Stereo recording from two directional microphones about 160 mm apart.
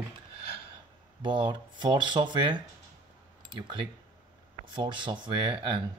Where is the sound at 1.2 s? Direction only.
30° right (ahead or behind).